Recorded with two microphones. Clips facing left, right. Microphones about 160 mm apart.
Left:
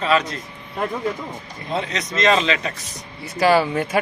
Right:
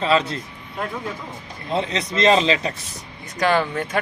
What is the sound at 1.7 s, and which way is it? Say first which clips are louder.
A man's voice: right 2 dB; 25° right (ahead or behind).